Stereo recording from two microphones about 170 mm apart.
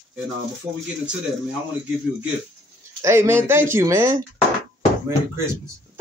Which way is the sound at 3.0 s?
15° right (ahead or behind).